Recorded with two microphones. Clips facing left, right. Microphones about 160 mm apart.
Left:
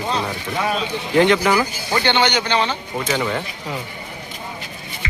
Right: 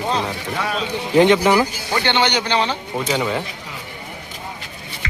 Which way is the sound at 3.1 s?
5° right (ahead or behind).